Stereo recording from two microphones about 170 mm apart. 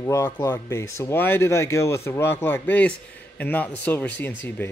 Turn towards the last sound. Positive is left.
turn(degrees=10)  # may be behind; listen again after turning